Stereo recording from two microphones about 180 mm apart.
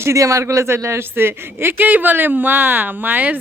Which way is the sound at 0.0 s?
15° right (ahead or behind).